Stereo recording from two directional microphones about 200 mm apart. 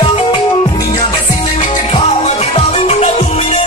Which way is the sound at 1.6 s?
30° left (ahead or behind).